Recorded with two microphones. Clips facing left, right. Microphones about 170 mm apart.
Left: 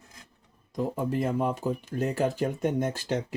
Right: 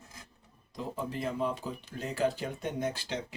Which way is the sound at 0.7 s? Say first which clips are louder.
Left 8 dB; 50° left (ahead or behind).